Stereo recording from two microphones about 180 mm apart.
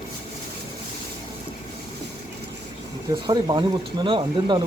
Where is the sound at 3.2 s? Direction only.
25° right (ahead or behind).